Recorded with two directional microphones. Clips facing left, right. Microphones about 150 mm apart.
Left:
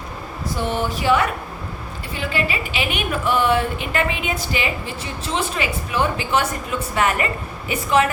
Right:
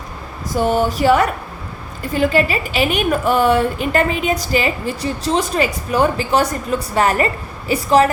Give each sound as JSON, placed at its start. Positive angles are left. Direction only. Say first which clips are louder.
{"t": 0.5, "sound": "a woman's voice", "louder": "right 7 dB", "side_deg": -40}